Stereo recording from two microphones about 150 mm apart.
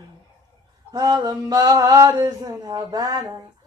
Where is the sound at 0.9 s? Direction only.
25° right (ahead or behind).